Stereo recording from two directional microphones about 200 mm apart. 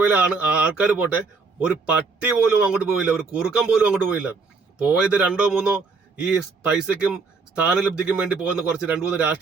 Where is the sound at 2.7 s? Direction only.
5° right (ahead or behind).